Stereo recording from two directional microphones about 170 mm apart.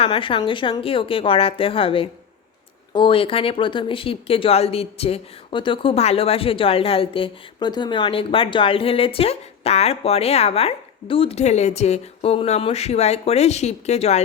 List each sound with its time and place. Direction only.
0.0 s speech: 30° left (ahead or behind)